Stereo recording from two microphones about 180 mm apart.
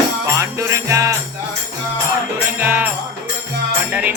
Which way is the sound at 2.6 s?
10° right (ahead or behind).